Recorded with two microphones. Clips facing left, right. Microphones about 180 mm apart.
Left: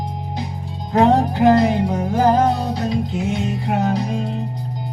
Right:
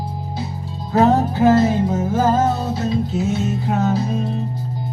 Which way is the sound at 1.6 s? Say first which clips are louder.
Right 1 dB; 15° left (ahead or behind).